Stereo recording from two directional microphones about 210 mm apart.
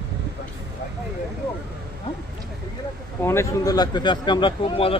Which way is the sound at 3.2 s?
15° left (ahead or behind).